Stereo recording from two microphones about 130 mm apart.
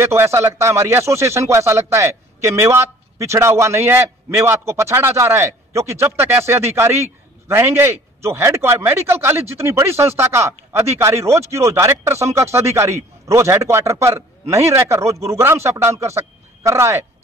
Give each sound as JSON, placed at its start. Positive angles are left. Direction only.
{"t": 0.0, "sound": "a man's voice", "side_deg": -20}